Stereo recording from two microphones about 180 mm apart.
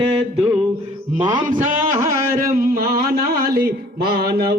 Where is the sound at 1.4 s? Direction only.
45° right (ahead or behind).